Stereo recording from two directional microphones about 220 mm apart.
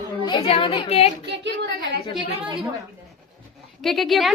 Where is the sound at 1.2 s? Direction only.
50° right (ahead or behind).